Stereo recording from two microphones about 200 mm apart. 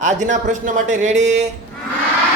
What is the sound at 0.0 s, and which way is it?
A man's voice, 35° right (ahead or behind).